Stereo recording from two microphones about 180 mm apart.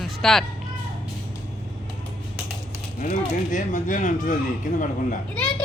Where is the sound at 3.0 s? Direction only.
45° left (ahead or behind).